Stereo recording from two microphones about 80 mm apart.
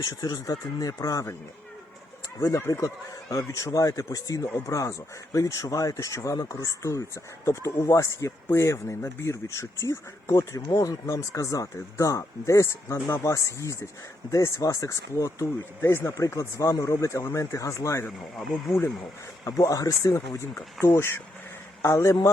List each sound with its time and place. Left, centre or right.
0.0 s speech: left
2.4 s speech: left
19.5 s speech: left
20.1 s speech: left